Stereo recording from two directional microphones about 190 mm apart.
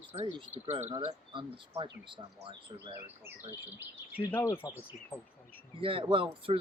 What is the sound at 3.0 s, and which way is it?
Speech, 10° right (ahead or behind).